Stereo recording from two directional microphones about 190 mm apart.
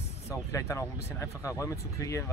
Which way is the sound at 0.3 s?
15° left (ahead or behind).